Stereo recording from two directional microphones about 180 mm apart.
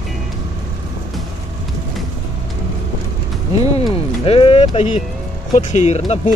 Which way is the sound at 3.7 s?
30° left (ahead or behind).